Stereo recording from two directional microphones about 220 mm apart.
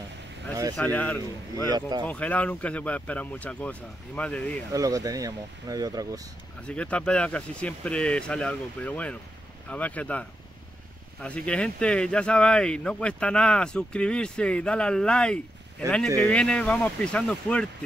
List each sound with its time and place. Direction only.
0.7 s speech: 5° left (ahead or behind)
1.7 s speech: 20° right (ahead or behind)
2.0 s speech: 5° left (ahead or behind)
4.7 s speech: 15° right (ahead or behind)
6.6 s speech: 5° left (ahead or behind)